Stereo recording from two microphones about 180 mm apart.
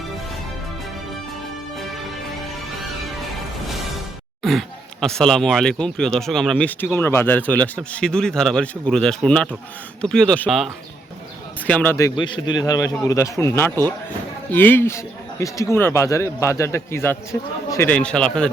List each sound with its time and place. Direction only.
4.4 s speech: centre (ahead or behind)